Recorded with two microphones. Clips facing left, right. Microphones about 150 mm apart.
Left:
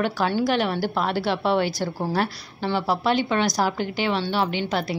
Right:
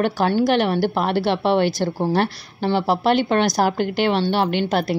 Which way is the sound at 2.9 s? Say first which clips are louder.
Right 4 dB; 60° right (ahead or behind).